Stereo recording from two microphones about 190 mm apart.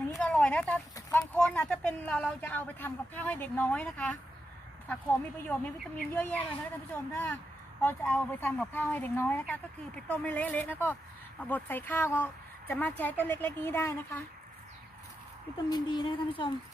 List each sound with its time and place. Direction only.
0.2 s a sound: 5° left (ahead or behind)
0.9 s speech: 15° left (ahead or behind)
5.4 s speech: 10° left (ahead or behind)
15.7 s speech: 25° left (ahead or behind)